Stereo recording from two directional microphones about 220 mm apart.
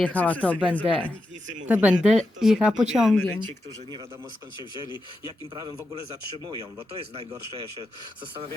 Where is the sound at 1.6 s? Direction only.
5° right (ahead or behind).